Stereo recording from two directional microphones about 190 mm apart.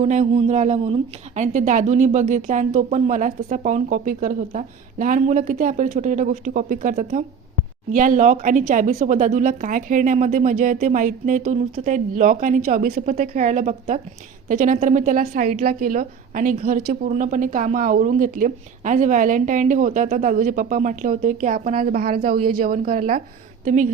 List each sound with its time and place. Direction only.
0.0 s a woman's voice: 35° right (ahead or behind)